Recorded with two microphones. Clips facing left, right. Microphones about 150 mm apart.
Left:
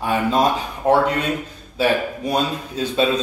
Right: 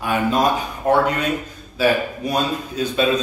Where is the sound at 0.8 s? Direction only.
15° left (ahead or behind).